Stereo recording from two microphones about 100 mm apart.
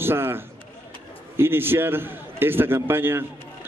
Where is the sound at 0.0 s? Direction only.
25° right (ahead or behind).